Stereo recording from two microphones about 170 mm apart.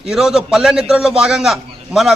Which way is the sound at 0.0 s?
5° right (ahead or behind).